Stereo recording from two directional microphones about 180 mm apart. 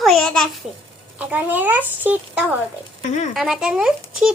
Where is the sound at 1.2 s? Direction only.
10° right (ahead or behind).